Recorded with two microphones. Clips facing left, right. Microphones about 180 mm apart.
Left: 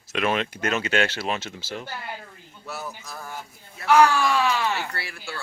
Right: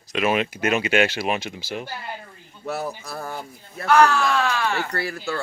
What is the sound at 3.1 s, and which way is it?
Speech, 55° right (ahead or behind).